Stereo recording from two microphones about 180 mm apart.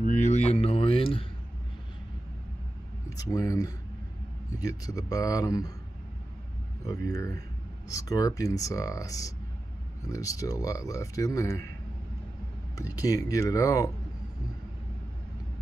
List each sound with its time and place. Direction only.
0.0 s a sound: 45° left (ahead or behind)
3.1 s speech: 20° left (ahead or behind)
7.1 s speech: 20° left (ahead or behind)
12.7 s speech: 20° left (ahead or behind)